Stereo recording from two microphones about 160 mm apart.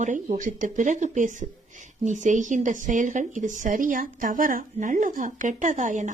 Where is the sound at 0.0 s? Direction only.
50° right (ahead or behind).